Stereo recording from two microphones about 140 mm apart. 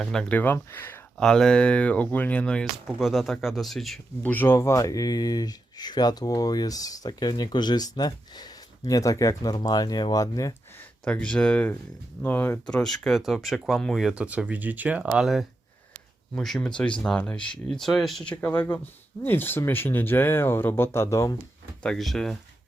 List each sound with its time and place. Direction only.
0.0 s speech: 5° left (ahead or behind)
1.2 s speech: 5° left (ahead or behind)
4.2 s speech: 15° left (ahead or behind)
10.8 s speech: 10° left (ahead or behind)
21.8 s speech: centre (ahead or behind)